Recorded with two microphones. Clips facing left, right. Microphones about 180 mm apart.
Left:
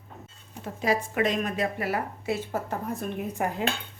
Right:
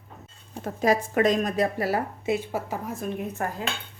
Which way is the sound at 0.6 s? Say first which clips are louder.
Right 4 dB; 45° right (ahead or behind).